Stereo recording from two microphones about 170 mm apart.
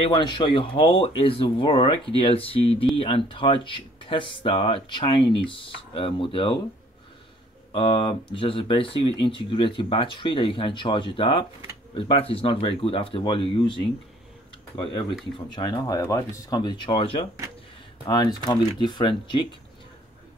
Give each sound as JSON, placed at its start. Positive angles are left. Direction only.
{"t": 0.0, "sound": "speech", "side_deg": 30}
{"t": 7.7, "sound": "speech", "side_deg": 30}
{"t": 15.3, "sound": "speech", "side_deg": 25}